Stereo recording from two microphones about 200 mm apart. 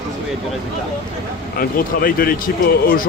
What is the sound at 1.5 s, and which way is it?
Speech, 45° left (ahead or behind).